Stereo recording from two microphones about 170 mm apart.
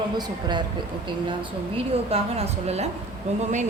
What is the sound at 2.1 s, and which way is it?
Speech, 35° right (ahead or behind).